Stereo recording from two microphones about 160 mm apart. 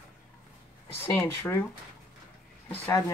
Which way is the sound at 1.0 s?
15° left (ahead or behind).